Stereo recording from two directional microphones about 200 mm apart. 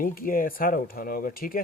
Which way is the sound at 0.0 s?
45° left (ahead or behind).